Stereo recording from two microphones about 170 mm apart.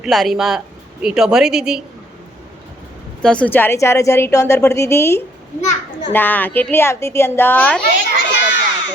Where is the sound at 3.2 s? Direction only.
5° left (ahead or behind).